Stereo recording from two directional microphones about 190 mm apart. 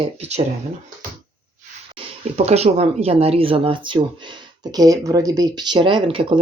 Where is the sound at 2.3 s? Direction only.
35° right (ahead or behind).